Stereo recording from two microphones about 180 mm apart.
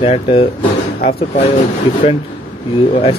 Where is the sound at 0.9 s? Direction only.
55° left (ahead or behind).